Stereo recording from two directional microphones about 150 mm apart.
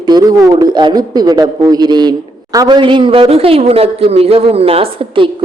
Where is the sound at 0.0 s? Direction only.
25° right (ahead or behind).